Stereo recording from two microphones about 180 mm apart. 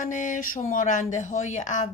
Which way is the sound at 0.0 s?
45° left (ahead or behind).